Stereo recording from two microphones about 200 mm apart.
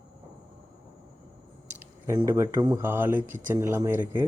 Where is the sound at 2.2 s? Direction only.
15° right (ahead or behind).